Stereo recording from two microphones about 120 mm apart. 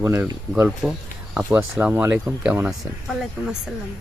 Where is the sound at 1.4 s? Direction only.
20° right (ahead or behind).